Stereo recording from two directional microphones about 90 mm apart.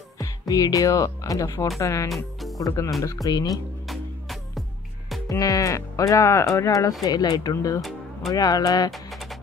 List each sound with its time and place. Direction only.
0.2 s speech: 45° left (ahead or behind)
2.0 s music: centre (ahead or behind)
3.3 s speech: 45° left (ahead or behind)
3.8 s music: centre (ahead or behind)
5.3 s speech: 40° left (ahead or behind)
7.5 s speech: 35° left (ahead or behind)
8.9 s music: centre (ahead or behind)